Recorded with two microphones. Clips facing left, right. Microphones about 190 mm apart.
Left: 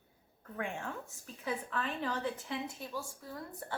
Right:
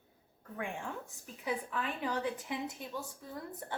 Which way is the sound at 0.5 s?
15° right (ahead or behind).